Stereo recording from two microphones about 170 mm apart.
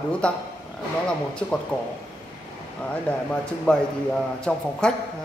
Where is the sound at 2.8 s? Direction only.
5° left (ahead or behind).